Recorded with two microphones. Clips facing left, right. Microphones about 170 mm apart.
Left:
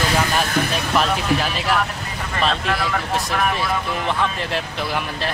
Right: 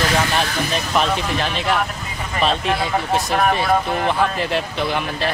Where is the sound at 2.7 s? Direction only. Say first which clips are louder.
Right 2 dB; 25° right (ahead or behind).